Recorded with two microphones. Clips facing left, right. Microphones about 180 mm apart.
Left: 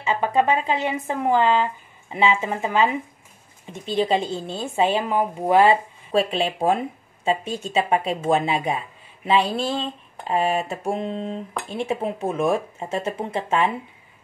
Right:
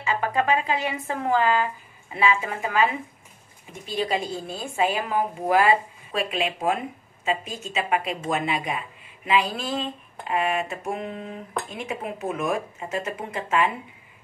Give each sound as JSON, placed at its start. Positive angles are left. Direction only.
{"t": 0.0, "sound": "a woman's voice", "side_deg": 25}